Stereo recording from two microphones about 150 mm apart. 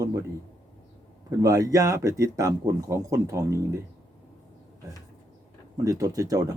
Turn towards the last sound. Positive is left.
turn(degrees=-20)  # may be behind; listen again after turning